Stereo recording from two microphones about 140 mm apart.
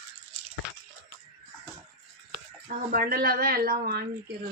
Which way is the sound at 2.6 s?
90° right.